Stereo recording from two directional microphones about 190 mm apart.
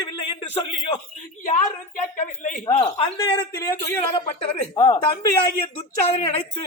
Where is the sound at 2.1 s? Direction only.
40° left (ahead or behind).